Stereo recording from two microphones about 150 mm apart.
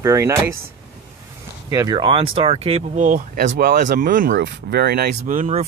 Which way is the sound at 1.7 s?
25° right (ahead or behind).